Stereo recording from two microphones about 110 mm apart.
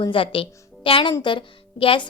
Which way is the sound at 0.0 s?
55° left (ahead or behind).